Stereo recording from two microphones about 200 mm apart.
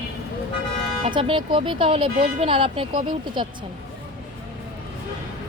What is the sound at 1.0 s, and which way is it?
Speech, 30° right (ahead or behind).